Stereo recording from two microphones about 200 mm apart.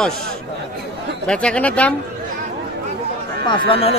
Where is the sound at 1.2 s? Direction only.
5° left (ahead or behind).